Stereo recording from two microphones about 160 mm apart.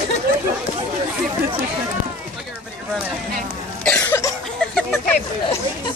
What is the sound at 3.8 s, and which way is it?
Cough, 15° left (ahead or behind).